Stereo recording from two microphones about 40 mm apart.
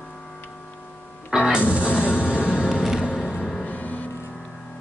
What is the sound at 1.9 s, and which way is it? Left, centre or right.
Music, left.